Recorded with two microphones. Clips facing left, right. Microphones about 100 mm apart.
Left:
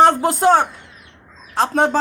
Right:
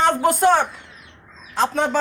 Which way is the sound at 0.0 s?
35° left (ahead or behind).